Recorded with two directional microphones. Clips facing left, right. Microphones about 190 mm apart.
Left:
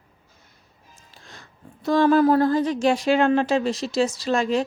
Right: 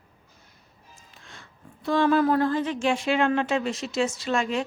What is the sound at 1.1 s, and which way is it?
Speech, 35° left (ahead or behind).